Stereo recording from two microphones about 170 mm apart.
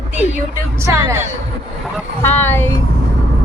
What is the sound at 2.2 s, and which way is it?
Speech, 10° left (ahead or behind).